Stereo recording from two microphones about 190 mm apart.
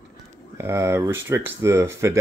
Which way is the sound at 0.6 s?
15° right (ahead or behind).